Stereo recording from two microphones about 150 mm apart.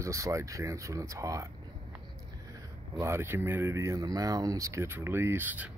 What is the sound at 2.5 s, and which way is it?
Speech, 20° right (ahead or behind).